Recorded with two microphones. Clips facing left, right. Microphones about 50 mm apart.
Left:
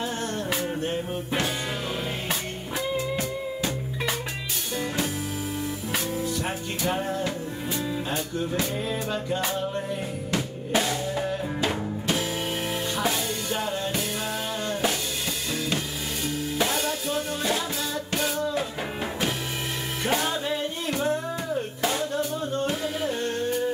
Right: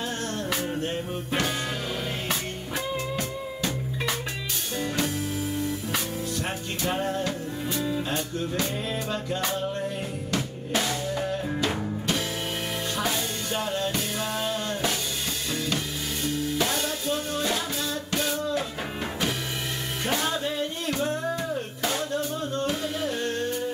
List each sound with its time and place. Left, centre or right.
0.5 s music: centre
3.2 s music: centre
6.9 s music: centre
11.1 s music: centre
16.5 s music: centre
20.4 s music: centre